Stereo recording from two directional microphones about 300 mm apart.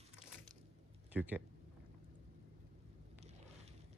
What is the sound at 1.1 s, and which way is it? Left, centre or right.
Speech, centre.